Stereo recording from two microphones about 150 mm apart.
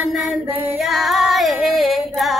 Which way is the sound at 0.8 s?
Centre (ahead or behind).